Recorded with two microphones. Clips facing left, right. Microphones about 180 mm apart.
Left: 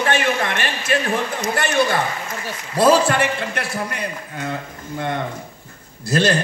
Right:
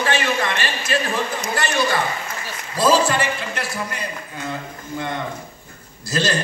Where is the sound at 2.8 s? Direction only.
60° left (ahead or behind).